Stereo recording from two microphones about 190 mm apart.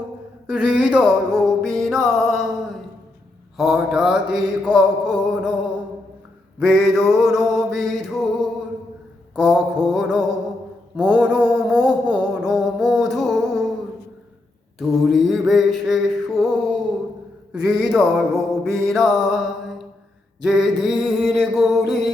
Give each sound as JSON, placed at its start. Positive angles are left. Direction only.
{"t": 0.4, "sound": "music", "side_deg": -5}
{"t": 3.6, "sound": "music", "side_deg": 0}
{"t": 6.6, "sound": "music", "side_deg": 0}
{"t": 10.9, "sound": "mantra", "side_deg": -5}
{"t": 14.8, "sound": "music", "side_deg": 0}
{"t": 17.7, "sound": "a sound", "side_deg": -20}
{"t": 17.9, "sound": "music", "side_deg": 0}